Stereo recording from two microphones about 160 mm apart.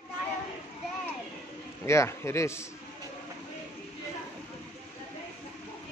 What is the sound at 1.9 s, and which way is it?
Speech, 15° left (ahead or behind).